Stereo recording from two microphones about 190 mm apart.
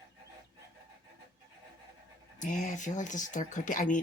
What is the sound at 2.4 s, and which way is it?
Speech, 40° left (ahead or behind).